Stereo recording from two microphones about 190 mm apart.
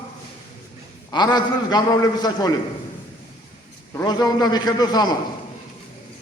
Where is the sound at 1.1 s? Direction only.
20° left (ahead or behind).